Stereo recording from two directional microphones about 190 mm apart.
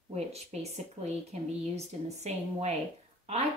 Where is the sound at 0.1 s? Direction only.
35° right (ahead or behind).